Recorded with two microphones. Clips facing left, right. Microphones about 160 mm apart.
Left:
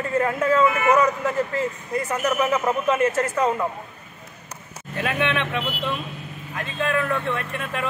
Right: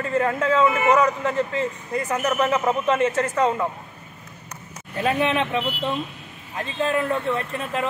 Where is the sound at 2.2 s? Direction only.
5° left (ahead or behind).